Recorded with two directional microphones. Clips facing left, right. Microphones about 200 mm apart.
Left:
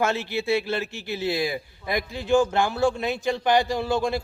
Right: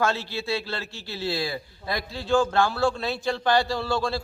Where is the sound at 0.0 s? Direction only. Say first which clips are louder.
Left 2 dB; 20° left (ahead or behind).